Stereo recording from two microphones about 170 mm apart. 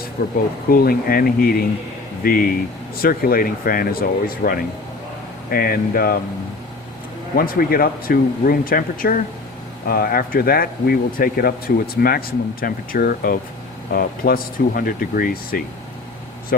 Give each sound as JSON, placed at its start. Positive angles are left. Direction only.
{"t": 0.2, "sound": "speech", "side_deg": 65}
{"t": 7.3, "sound": "speech", "side_deg": 60}